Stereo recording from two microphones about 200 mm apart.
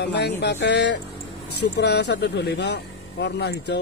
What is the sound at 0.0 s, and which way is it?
Speech, 55° left (ahead or behind).